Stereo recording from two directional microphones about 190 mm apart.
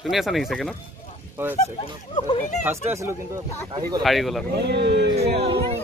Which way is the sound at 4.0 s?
Centre (ahead or behind).